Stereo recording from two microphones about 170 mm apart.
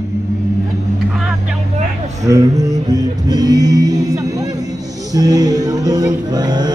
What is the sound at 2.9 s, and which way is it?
Music, 20° right (ahead or behind).